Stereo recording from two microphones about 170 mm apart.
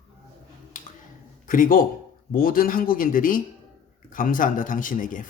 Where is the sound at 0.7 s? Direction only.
50° left (ahead or behind).